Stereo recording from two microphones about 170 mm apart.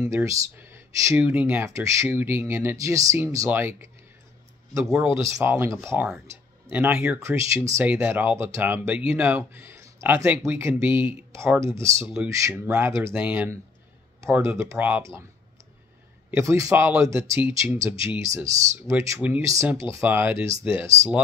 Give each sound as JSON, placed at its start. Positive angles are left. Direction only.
{"t": 0.0, "sound": "speech", "side_deg": -20}
{"t": 5.1, "sound": "speech", "side_deg": -15}
{"t": 7.2, "sound": "speech", "side_deg": -15}
{"t": 16.3, "sound": "speech", "side_deg": -15}